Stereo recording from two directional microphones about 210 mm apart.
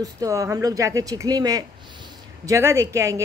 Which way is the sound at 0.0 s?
15° right (ahead or behind).